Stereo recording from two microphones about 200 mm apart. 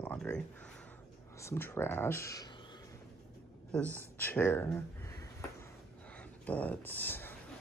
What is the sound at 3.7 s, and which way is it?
Speech, 5° left (ahead or behind).